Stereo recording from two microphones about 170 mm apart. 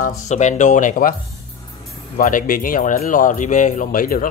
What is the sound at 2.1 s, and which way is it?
Speech, 55° left (ahead or behind).